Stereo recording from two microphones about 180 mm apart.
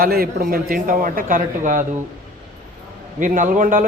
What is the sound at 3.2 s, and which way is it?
Speech, 45° right (ahead or behind).